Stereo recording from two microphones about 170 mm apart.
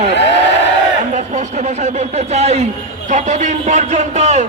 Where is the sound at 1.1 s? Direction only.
45° right (ahead or behind).